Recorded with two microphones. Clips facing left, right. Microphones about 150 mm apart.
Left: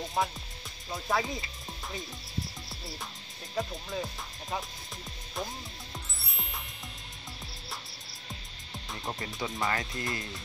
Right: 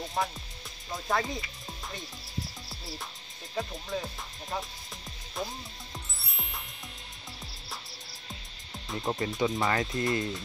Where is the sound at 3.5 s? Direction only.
Centre (ahead or behind).